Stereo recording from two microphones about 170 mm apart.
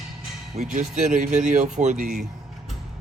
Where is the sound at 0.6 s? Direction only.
50° right (ahead or behind).